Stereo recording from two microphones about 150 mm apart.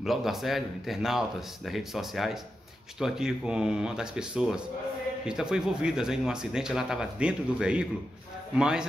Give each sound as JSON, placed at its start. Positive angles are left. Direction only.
{"t": 0.0, "sound": "speech", "side_deg": 0}